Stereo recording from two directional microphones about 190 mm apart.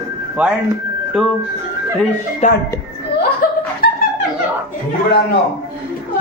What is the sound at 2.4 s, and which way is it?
Speech, 40° left (ahead or behind).